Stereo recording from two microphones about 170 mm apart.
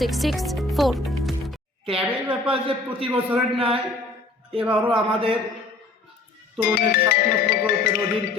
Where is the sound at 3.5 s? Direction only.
35° right (ahead or behind).